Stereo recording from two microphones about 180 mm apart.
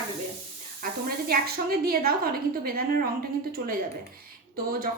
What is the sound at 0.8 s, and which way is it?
A woman's voice, 55° right (ahead or behind).